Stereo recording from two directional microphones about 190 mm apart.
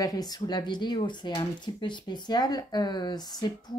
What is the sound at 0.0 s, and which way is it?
Speech, 20° left (ahead or behind).